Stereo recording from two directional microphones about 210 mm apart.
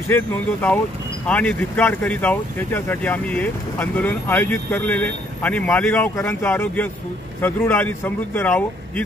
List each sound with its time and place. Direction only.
0.1 s speech: 10° left (ahead or behind)